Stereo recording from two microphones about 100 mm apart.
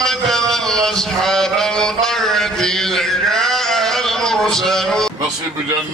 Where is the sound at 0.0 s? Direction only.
5° left (ahead or behind).